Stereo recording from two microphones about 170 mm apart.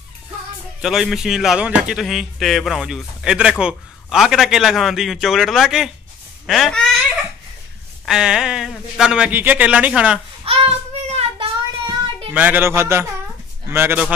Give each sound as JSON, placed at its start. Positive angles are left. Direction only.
{"t": 0.8, "sound": "speech", "side_deg": 0}
{"t": 10.4, "sound": "child singing", "side_deg": -35}
{"t": 12.4, "sound": "speech", "side_deg": -10}